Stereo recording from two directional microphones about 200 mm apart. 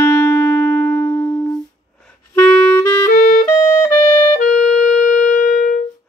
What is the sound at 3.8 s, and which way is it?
Music, 20° left (ahead or behind).